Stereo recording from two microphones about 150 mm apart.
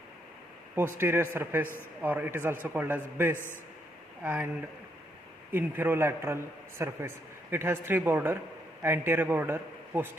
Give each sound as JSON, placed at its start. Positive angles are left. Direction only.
{"t": 0.9, "sound": "a man's voice", "side_deg": -15}
{"t": 5.5, "sound": "a man's voice", "side_deg": -15}